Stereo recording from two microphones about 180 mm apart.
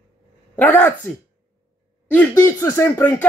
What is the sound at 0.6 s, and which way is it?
Speech, 10° left (ahead or behind).